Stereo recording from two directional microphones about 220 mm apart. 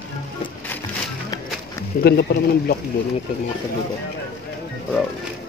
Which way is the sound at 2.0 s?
45° left (ahead or behind).